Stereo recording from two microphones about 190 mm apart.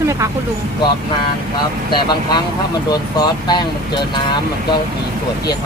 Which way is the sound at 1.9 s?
20° left (ahead or behind).